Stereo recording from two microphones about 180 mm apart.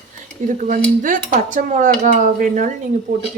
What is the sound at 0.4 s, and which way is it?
Dishes, 45° right (ahead or behind).